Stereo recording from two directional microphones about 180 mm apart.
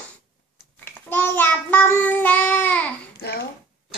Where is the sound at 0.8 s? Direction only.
10° left (ahead or behind).